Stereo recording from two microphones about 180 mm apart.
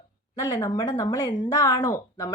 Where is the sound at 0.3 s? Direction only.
15° left (ahead or behind).